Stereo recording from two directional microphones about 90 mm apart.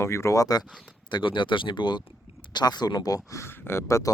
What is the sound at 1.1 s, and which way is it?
Speech, 60° left (ahead or behind).